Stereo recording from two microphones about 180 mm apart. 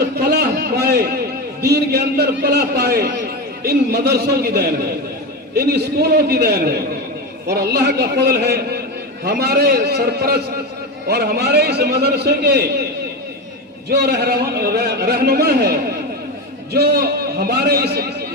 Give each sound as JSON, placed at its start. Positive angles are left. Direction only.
{"t": 0.0, "sound": "a sound", "side_deg": -60}
{"t": 1.6, "sound": "a man's voice", "side_deg": -60}
{"t": 13.9, "sound": "a man's voice", "side_deg": -60}